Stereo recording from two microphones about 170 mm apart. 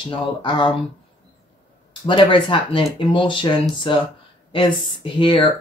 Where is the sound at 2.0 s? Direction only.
30° left (ahead or behind).